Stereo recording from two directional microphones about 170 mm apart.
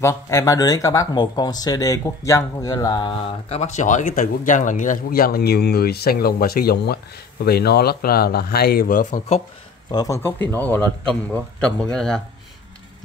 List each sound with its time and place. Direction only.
0.0 s speech: 15° left (ahead or behind); by 9.2 s 55° left (ahead or behind)
9.8 s speech: 20° left (ahead or behind); by 12.2 s 5° left (ahead or behind)